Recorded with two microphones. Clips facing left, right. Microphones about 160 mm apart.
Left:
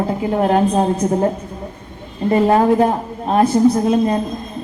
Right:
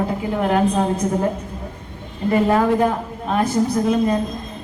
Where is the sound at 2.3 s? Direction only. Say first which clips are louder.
Left 3 dB; 35° left (ahead or behind).